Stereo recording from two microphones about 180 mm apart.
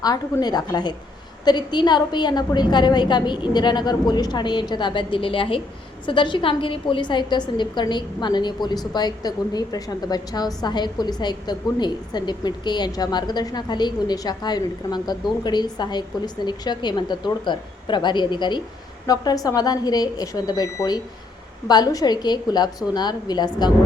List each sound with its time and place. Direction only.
0.0 s a woman's voice: 20° left (ahead or behind)